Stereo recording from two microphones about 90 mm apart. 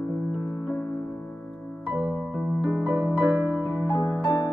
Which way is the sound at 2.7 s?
15° right (ahead or behind).